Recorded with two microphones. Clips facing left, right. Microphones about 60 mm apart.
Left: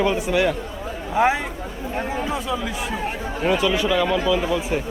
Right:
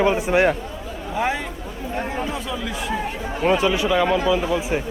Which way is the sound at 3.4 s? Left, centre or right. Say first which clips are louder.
Right 2 dB; right.